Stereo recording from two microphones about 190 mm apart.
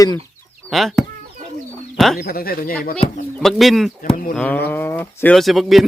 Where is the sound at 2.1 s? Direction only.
50° left (ahead or behind).